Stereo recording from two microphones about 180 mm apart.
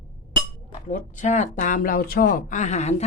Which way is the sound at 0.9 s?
45° left (ahead or behind).